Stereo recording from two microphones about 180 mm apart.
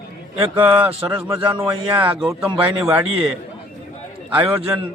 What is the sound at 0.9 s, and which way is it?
Speech, 30° right (ahead or behind).